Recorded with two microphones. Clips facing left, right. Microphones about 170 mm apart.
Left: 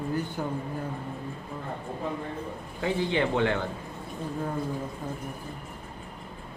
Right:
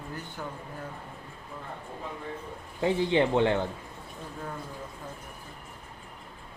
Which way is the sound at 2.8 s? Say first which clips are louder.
Right 2 dB; 20° right (ahead or behind).